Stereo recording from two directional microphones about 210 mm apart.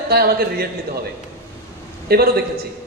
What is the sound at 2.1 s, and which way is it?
Speech, 50° right (ahead or behind).